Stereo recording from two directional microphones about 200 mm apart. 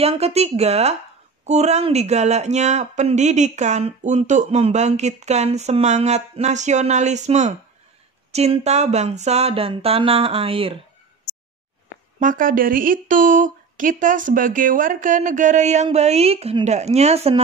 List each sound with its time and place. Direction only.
0.0 s speech: 30° right (ahead or behind)
12.2 s speech: 40° right (ahead or behind)